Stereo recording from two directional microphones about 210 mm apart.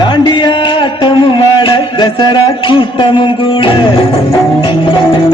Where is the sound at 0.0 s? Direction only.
20° left (ahead or behind).